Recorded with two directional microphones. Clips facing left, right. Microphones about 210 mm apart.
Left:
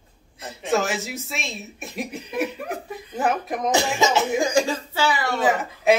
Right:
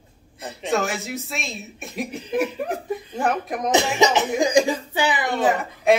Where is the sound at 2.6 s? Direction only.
30° right (ahead or behind).